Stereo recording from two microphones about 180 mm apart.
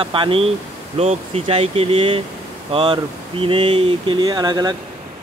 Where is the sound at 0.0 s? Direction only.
30° right (ahead or behind).